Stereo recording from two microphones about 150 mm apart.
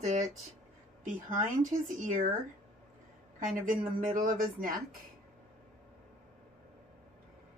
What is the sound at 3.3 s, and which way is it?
A woman's voice, 65° right (ahead or behind).